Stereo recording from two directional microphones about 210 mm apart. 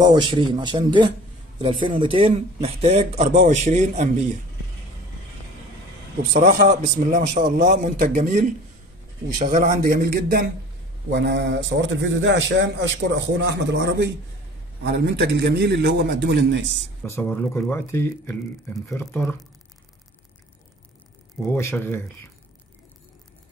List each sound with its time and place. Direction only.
0.0 s speech: 20° right (ahead or behind)
6.3 s speech: 35° right (ahead or behind)
11.1 s a man's voice: 55° right (ahead or behind)
17.0 s speech: 10° left (ahead or behind)
21.5 s speech: 10° left (ahead or behind)